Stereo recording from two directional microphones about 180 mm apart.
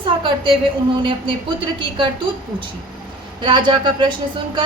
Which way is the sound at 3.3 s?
25° right (ahead or behind).